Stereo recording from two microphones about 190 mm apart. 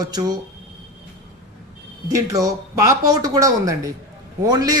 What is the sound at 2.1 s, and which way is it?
A man's voice, 15° right (ahead or behind).